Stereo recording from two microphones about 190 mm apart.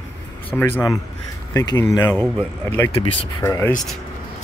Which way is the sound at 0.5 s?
10° left (ahead or behind).